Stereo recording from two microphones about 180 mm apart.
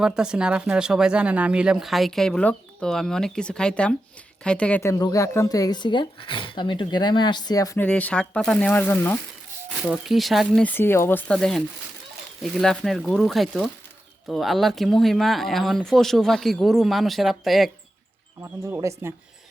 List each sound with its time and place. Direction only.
0.0 s speech: 5° right (ahead or behind); by 7.9 s 20° left (ahead or behind)
7.9 s speech: 5° left (ahead or behind)
9.8 s speech: centre (ahead or behind)
18.4 s speech: 15° right (ahead or behind)